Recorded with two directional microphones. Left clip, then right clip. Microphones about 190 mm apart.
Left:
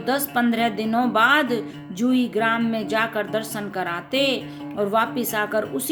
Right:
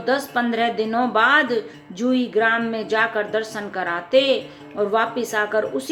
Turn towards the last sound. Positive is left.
turn(degrees=25)  # may be behind; listen again after turning